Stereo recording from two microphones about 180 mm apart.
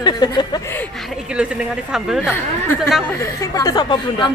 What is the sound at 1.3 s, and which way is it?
Speech, 5° right (ahead or behind).